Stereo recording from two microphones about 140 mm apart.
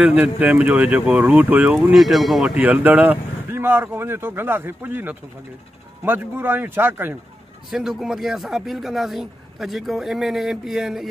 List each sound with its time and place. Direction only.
0.0 s speech: 10° right (ahead or behind)
7.7 s speech: centre (ahead or behind)